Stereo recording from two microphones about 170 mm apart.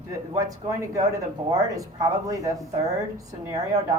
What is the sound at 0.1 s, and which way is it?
Speech, 20° right (ahead or behind).